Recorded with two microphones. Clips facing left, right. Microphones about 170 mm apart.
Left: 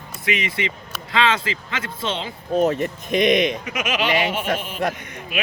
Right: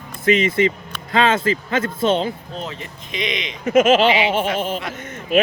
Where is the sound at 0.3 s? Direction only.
50° right (ahead or behind).